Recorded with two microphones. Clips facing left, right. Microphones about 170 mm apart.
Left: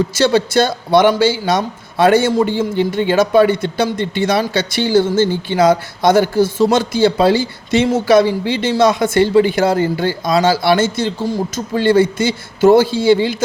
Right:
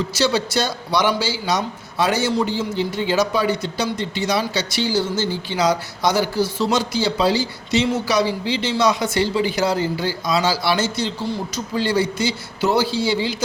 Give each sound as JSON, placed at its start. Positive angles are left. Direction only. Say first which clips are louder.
{"t": 0.0, "sound": "a man's voice", "louder": "left 6 dB", "side_deg": 50}